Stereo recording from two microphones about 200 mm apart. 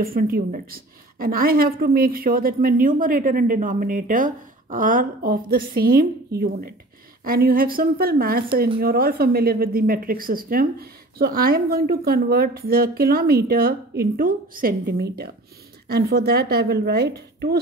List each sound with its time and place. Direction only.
0.0 s a woman's voice: 45° right (ahead or behind)